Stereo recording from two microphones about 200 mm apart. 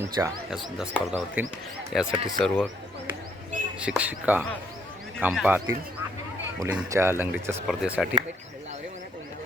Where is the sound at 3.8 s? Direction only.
5° right (ahead or behind).